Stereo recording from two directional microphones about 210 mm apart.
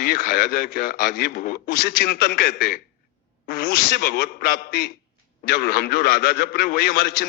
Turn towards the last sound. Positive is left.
turn(degrees=45)  # may be behind; listen again after turning